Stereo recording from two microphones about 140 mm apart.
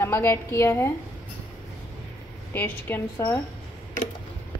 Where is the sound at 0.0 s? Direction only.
15° left (ahead or behind).